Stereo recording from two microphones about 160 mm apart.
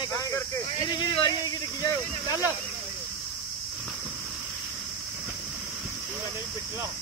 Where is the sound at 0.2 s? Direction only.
20° left (ahead or behind).